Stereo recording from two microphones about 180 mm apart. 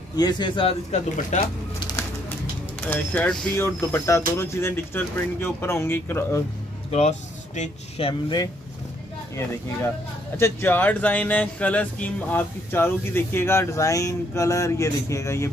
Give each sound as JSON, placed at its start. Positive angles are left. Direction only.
{"t": 0.1, "sound": "a man's voice", "side_deg": 20}
{"t": 1.1, "sound": "speech", "side_deg": 45}
{"t": 2.8, "sound": "speech", "side_deg": 10}
{"t": 6.9, "sound": "speech", "side_deg": 40}
{"t": 8.1, "sound": "a man's voice", "side_deg": 20}
{"t": 10.3, "sound": "speech", "side_deg": 15}